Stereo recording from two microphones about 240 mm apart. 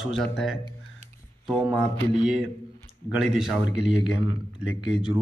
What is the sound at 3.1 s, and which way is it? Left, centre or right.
A man's voice, centre.